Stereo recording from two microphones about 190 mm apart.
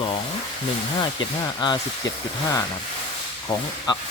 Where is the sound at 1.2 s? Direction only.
25° left (ahead or behind).